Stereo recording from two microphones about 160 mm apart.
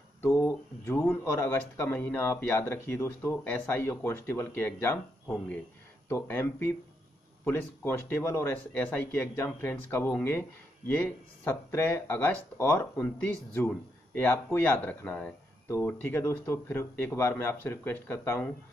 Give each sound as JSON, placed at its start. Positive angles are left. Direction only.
{"t": 0.2, "sound": "a sound", "side_deg": 15}
{"t": 1.2, "sound": "speech", "side_deg": 15}
{"t": 14.1, "sound": "speech", "side_deg": 15}